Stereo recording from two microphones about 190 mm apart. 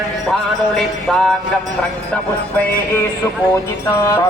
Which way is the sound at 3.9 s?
15° left (ahead or behind).